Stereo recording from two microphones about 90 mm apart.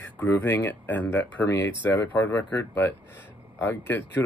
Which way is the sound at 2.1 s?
40° left (ahead or behind).